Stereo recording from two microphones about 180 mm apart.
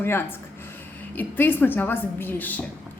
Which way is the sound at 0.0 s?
10° left (ahead or behind).